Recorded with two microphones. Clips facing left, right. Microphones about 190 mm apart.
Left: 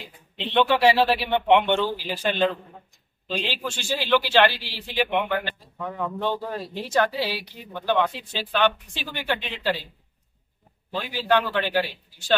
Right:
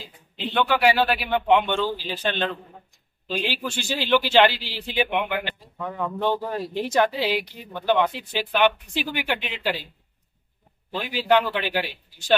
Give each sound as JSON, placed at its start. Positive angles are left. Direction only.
{"t": 0.4, "sound": "a man's voice", "side_deg": 25}
{"t": 1.8, "sound": "speech", "side_deg": 10}
{"t": 3.3, "sound": "speech", "side_deg": -10}
{"t": 10.9, "sound": "speech", "side_deg": -15}